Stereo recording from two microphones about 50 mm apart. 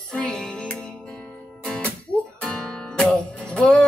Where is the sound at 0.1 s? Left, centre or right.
Centre.